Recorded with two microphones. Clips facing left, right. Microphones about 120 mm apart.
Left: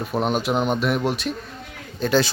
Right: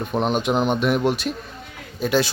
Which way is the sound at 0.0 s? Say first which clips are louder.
Right 1 dB; centre (ahead or behind).